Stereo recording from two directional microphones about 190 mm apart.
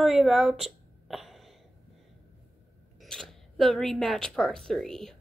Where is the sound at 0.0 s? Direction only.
Centre (ahead or behind).